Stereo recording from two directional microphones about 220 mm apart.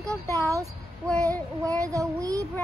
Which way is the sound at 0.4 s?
15° right (ahead or behind).